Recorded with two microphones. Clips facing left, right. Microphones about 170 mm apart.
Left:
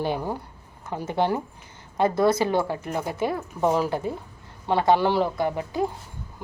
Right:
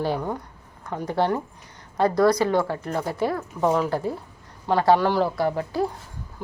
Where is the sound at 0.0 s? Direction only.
20° left (ahead or behind).